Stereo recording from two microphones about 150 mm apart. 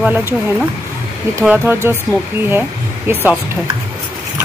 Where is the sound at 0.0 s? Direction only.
10° right (ahead or behind).